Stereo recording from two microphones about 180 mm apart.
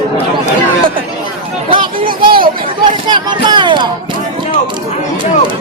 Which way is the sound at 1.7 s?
25° right (ahead or behind).